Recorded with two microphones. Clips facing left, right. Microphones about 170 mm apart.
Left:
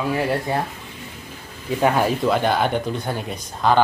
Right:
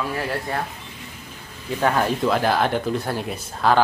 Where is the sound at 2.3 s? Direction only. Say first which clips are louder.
Left 1 dB; centre (ahead or behind).